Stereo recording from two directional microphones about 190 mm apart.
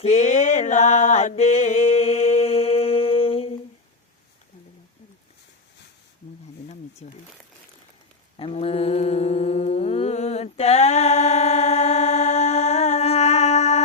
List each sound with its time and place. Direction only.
0.0 s music: 40° left (ahead or behind)
7.0 s speech: 35° left (ahead or behind)
8.4 s mantra: 30° left (ahead or behind)